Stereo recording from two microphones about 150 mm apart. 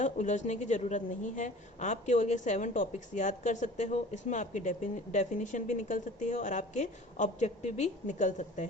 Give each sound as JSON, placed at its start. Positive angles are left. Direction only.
{"t": 0.0, "sound": "a woman's voice", "side_deg": 55}